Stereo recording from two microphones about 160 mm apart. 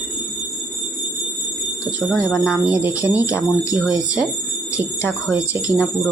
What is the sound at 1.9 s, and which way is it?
Speech, 5° right (ahead or behind).